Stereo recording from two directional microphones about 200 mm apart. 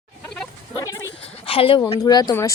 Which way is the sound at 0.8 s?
15° left (ahead or behind).